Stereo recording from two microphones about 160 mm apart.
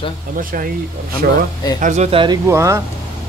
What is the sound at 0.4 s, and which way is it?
Speech, 60° right (ahead or behind).